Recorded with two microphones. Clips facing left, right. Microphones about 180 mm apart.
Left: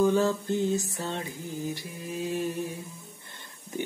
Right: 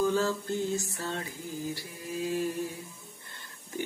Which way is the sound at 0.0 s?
20° left (ahead or behind).